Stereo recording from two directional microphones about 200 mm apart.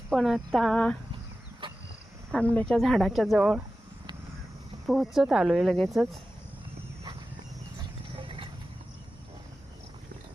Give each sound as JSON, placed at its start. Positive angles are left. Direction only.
{"t": 0.1, "sound": "speech", "side_deg": 0}
{"t": 1.6, "sound": "a sound", "side_deg": -25}
{"t": 2.6, "sound": "speech", "side_deg": 0}
{"t": 4.9, "sound": "speech", "side_deg": 0}
{"t": 8.1, "sound": "clip-clop", "side_deg": -25}